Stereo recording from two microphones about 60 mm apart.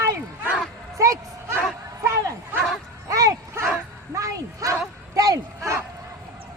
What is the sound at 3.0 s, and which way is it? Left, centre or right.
Bow-wow, right.